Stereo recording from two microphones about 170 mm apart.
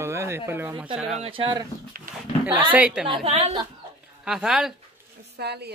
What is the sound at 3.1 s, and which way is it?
Speech, 35° right (ahead or behind).